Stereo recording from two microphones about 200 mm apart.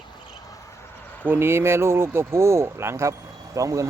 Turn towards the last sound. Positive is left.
turn(degrees=-15)  # may be behind; listen again after turning